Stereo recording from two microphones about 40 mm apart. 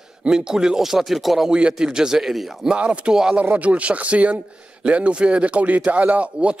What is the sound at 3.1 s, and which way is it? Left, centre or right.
Speech, centre.